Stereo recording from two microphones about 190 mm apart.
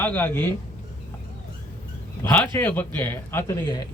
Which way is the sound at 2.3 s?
10° left (ahead or behind).